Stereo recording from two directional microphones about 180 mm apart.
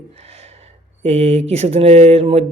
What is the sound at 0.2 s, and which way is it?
Speech, 35° right (ahead or behind).